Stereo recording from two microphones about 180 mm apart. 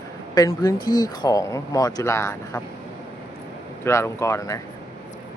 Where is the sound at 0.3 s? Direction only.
20° left (ahead or behind).